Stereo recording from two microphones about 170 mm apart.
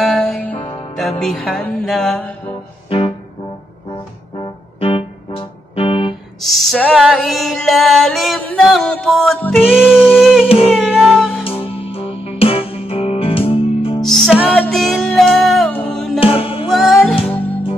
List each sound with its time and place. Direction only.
0.0 s music: centre (ahead or behind)
0.6 s music: 35° left (ahead or behind)
1.2 s music: centre (ahead or behind)
4.4 s music: 30° left (ahead or behind)
6.4 s music: centre (ahead or behind)
9.7 s music: 5° right (ahead or behind)
11.6 s music: 35° left (ahead or behind)
14.0 s music: centre (ahead or behind)
16.2 s music: 35° left (ahead or behind)
16.6 s music: centre (ahead or behind)